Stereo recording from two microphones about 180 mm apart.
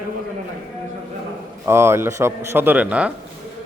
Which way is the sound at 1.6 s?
15° right (ahead or behind).